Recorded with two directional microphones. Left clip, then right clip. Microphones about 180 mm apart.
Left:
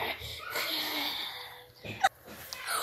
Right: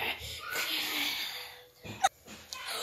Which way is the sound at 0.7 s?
20° right (ahead or behind).